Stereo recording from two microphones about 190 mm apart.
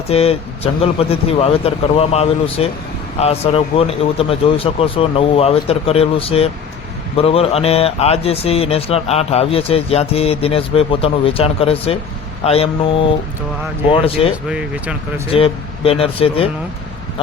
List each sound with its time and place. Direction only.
0.1 s speech: 30° left (ahead or behind)
13.9 s speech: 30° left (ahead or behind)